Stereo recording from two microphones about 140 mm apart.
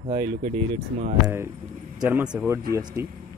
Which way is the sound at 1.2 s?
20° right (ahead or behind).